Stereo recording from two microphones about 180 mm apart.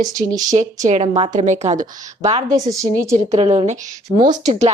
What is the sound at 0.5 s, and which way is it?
A woman's voice, 40° right (ahead or behind).